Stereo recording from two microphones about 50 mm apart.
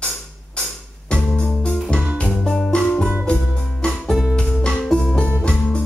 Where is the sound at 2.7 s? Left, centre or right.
Centre.